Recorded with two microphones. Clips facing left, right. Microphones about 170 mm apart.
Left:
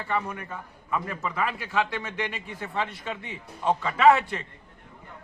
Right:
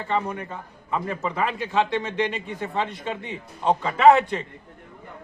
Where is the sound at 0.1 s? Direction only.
25° right (ahead or behind).